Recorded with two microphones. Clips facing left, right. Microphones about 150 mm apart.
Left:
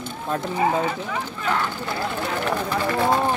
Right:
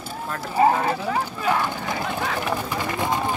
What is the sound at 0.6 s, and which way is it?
Speech, 35° right (ahead or behind).